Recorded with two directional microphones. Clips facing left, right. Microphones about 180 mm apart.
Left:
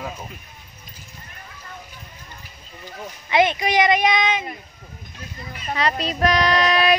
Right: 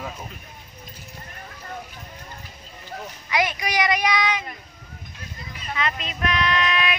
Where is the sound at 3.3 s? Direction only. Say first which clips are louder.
Left 6 dB; 25° left (ahead or behind).